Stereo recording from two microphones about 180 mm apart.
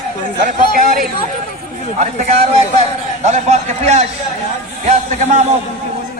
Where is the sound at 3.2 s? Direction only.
40° right (ahead or behind).